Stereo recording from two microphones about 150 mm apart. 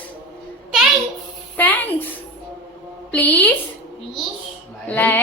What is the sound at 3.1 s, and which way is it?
Speech, 10° left (ahead or behind).